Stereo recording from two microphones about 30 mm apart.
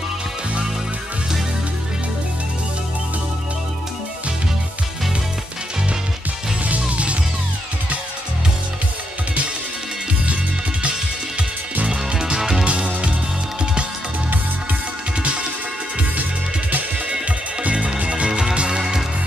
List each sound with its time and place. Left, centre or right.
6.6 s music: right
11.8 s music: right
12.4 s music: centre
12.6 s music: right
17.6 s music: right